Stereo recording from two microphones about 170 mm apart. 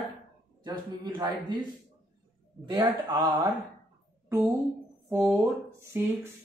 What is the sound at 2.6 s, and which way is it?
Speech, 25° right (ahead or behind).